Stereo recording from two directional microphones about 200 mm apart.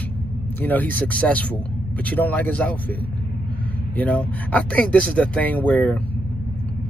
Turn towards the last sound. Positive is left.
turn(degrees=10)  # may be behind; listen again after turning